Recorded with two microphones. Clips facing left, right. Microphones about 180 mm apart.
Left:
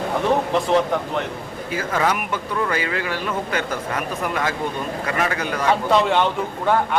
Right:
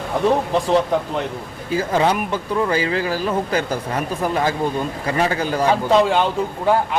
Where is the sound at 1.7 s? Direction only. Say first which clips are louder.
Right 4 dB; 30° right (ahead or behind).